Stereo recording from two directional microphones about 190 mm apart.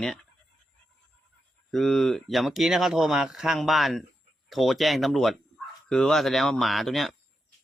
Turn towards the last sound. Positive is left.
turn(degrees=0)  # may be behind; listen again after turning